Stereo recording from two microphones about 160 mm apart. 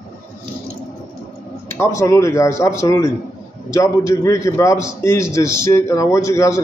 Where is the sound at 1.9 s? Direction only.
20° left (ahead or behind).